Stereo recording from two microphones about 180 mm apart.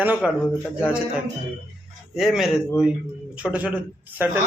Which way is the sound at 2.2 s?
Centre (ahead or behind).